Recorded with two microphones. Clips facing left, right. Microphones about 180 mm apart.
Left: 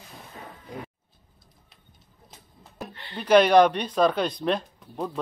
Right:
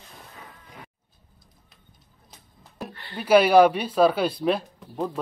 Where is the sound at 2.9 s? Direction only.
20° left (ahead or behind).